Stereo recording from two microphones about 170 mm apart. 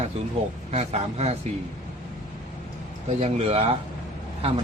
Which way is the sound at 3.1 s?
40° right (ahead or behind).